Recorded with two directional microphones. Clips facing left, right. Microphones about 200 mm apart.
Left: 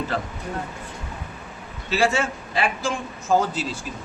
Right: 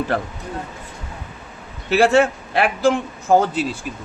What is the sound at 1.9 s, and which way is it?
A man's voice, 60° right (ahead or behind).